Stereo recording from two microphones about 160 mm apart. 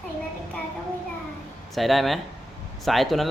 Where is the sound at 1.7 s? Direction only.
Centre (ahead or behind).